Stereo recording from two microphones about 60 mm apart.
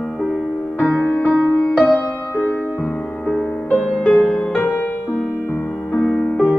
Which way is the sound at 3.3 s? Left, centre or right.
Left.